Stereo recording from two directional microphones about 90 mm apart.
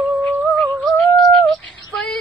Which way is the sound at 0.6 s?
5° left (ahead or behind).